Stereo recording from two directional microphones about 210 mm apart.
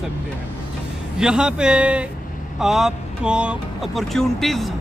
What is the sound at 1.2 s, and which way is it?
Speech, 5° right (ahead or behind).